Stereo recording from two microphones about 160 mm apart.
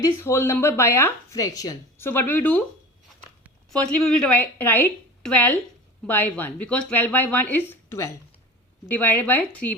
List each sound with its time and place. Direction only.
0.0 s speech: 15° left (ahead or behind)
3.7 s speech: 5° left (ahead or behind)